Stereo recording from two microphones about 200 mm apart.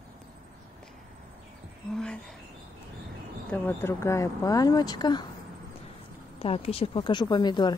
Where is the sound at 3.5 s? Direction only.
10° left (ahead or behind).